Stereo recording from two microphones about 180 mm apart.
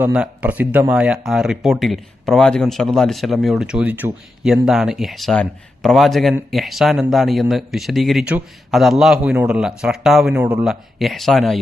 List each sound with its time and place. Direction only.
0.0 s speech: 5° right (ahead or behind)